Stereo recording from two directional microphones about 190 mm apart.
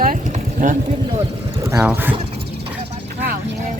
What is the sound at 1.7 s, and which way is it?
Speech, 15° right (ahead or behind).